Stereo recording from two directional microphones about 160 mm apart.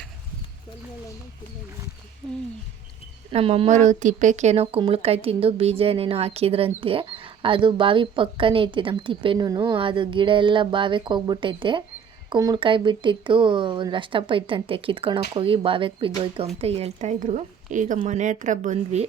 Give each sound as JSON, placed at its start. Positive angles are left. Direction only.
{"t": 3.3, "sound": "a woman's voice", "side_deg": -40}